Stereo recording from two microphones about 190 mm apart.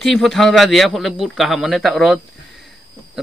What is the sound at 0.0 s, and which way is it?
A man's voice, centre (ahead or behind).